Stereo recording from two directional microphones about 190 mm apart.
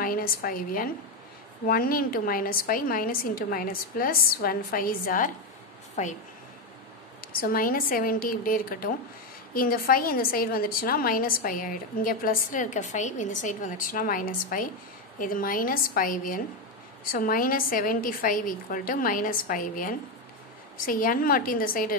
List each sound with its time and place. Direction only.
0.0 s a woman's voice: 50° left (ahead or behind)
7.4 s a woman's voice: 50° left (ahead or behind)